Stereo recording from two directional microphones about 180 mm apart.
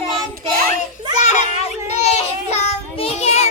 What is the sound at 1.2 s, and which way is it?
Child singing, 40° left (ahead or behind).